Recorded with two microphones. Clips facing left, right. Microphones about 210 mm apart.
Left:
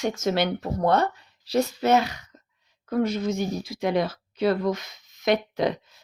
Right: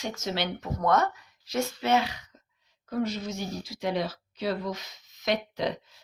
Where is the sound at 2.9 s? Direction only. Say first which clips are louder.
Left 6 dB; 55° left (ahead or behind).